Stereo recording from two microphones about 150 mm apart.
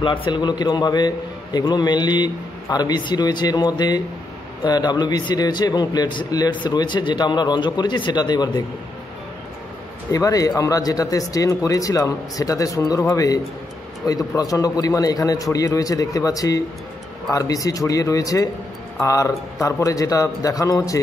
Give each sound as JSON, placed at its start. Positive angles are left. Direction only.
{"t": 0.0, "sound": "a man's voice", "side_deg": 35}
{"t": 10.1, "sound": "a man's voice", "side_deg": 25}